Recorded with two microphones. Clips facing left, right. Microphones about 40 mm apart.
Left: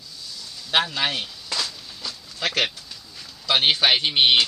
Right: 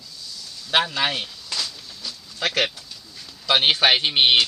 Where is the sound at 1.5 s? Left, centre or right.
Left.